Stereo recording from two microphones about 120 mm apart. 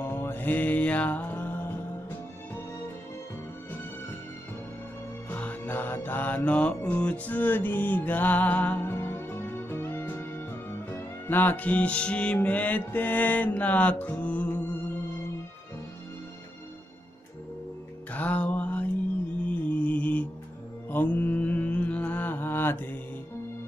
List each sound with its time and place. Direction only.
0.0 s music: 15° left (ahead or behind)
5.3 s mantra: 15° left (ahead or behind)
18.1 s music: 10° left (ahead or behind)
19.4 s mantra: 10° left (ahead or behind)